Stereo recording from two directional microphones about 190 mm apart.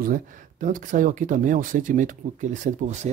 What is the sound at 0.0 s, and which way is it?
Speech, 45° right (ahead or behind).